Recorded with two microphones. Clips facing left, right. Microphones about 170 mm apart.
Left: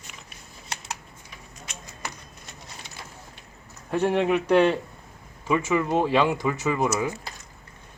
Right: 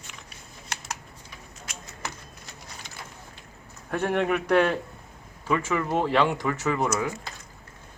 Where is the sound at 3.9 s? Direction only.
15° left (ahead or behind).